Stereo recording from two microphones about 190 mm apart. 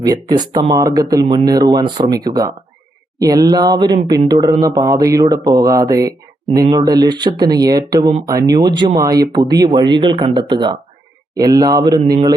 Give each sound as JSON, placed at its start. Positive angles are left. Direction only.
{"t": 0.0, "sound": "speech", "side_deg": -20}